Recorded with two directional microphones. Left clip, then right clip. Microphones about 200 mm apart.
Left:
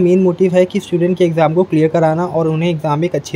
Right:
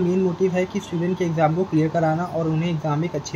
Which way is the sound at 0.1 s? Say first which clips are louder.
Left 9 dB; 50° left (ahead or behind).